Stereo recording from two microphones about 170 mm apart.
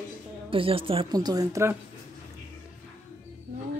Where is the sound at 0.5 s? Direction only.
30° right (ahead or behind); by 1.8 s 15° right (ahead or behind).